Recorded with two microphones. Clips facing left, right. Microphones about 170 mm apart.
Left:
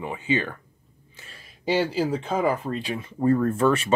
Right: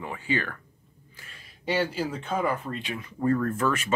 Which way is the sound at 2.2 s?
30° left (ahead or behind).